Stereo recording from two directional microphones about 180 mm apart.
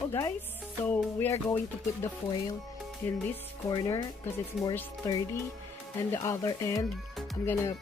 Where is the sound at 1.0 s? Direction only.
15° left (ahead or behind).